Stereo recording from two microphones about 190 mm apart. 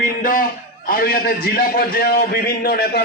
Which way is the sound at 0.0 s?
45° left (ahead or behind).